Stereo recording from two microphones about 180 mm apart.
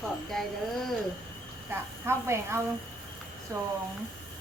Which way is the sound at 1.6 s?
15° right (ahead or behind).